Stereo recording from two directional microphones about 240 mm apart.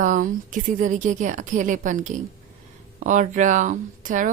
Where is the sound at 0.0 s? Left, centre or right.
Right.